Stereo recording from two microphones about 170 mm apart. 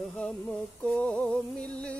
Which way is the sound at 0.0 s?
5° left (ahead or behind).